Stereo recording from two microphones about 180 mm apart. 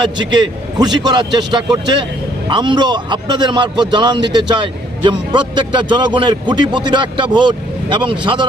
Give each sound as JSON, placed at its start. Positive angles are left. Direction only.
{"t": 0.8, "sound": "a man's voice", "side_deg": -25}